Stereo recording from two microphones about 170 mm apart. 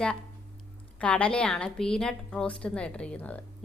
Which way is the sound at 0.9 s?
5° left (ahead or behind).